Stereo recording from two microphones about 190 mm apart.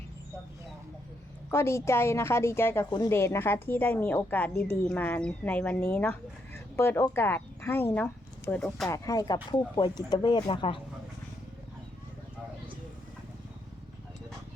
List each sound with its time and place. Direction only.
1.5 s speech: 15° left (ahead or behind)
8.9 s speech: 20° left (ahead or behind)